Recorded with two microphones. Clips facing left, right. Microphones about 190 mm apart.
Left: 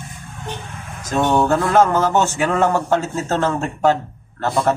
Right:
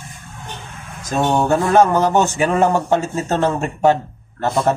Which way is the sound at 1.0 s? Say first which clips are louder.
Even; 10° right (ahead or behind).